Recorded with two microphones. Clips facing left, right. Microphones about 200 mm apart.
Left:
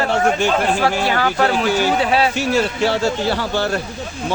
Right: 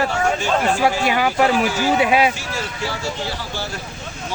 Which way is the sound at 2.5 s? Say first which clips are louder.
Left 9 dB; 70° left (ahead or behind).